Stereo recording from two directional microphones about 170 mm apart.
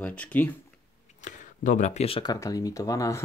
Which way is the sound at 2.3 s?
20° left (ahead or behind).